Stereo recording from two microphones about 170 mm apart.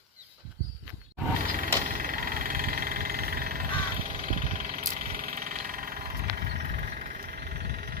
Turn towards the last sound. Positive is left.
turn(degrees=-65)  # may be behind; listen again after turning